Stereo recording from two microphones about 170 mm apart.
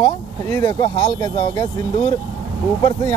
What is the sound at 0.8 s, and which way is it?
Speech, 35° left (ahead or behind).